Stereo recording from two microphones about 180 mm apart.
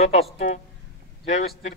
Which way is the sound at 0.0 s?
40° left (ahead or behind).